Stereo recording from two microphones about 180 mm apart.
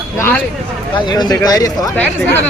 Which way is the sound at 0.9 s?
20° left (ahead or behind).